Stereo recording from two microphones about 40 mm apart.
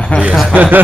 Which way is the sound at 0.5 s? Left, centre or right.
Right.